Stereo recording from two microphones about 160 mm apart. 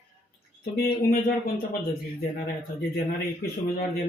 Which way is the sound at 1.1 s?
65° left (ahead or behind).